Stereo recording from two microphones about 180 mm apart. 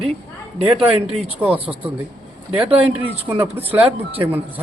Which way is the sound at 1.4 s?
10° right (ahead or behind).